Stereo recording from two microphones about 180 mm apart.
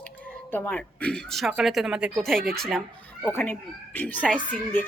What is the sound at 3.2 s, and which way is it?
A woman's voice, 10° left (ahead or behind).